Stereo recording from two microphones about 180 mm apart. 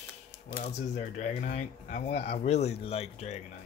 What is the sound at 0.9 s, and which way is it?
Speech, 40° left (ahead or behind).